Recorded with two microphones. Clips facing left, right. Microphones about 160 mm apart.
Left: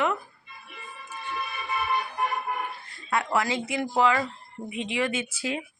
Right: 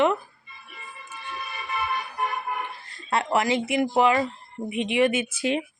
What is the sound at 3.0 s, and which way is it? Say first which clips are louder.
Speech: right 3 dB; 25° right (ahead or behind).